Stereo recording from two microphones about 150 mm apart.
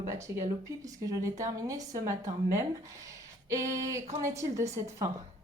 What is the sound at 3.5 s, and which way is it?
Speech, 20° right (ahead or behind).